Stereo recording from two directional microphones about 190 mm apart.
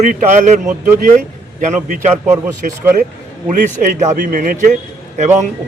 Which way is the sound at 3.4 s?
40° right (ahead or behind).